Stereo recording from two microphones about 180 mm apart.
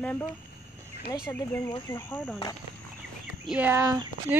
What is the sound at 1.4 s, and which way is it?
Speech, 20° left (ahead or behind).